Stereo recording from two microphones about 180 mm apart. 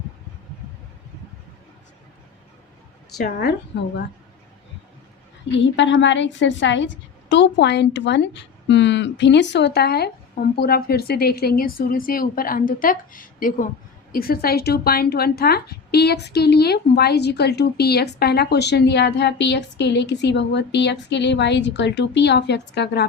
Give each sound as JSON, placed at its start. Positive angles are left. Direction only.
{"t": 5.5, "sound": "speech", "side_deg": 90}